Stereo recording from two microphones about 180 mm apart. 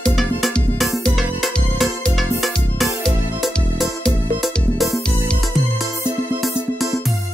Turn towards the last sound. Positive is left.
turn(degrees=0)  # may be behind; listen again after turning